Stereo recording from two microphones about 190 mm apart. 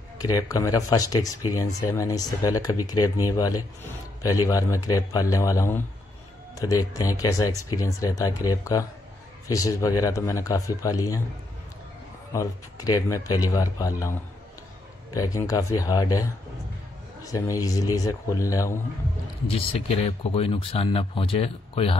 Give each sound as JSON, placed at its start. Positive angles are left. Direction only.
{"t": 0.2, "sound": "speech", "side_deg": 20}
{"t": 12.3, "sound": "speech", "side_deg": 20}
{"t": 15.1, "sound": "speech", "side_deg": 20}
{"t": 19.4, "sound": "speech", "side_deg": 30}